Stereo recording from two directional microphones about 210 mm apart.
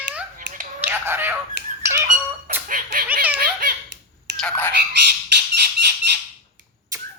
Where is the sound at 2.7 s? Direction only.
40° right (ahead or behind).